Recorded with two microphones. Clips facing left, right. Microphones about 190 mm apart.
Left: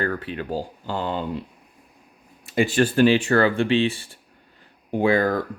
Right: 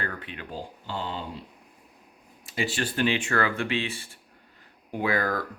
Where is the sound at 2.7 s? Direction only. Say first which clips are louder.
Left 10 dB; 45° left (ahead or behind).